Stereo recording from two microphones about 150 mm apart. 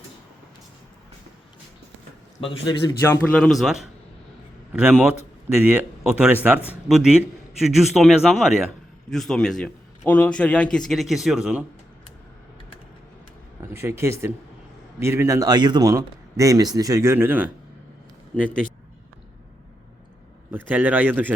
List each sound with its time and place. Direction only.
2.4 s a man's voice: 30° left (ahead or behind)
3.0 s a man's voice: 10° left (ahead or behind); by 11.6 s 5° right (ahead or behind)
13.6 s a man's voice: 15° right (ahead or behind)
20.5 s speech: 10° right (ahead or behind)